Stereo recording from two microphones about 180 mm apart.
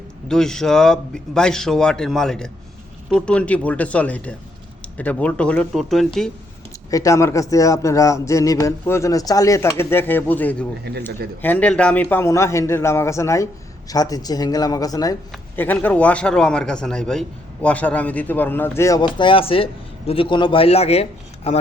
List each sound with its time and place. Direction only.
0.3 s a man's voice: 5° left (ahead or behind)
6.9 s a man's voice: 20° left (ahead or behind); by 21.6 s 35° left (ahead or behind)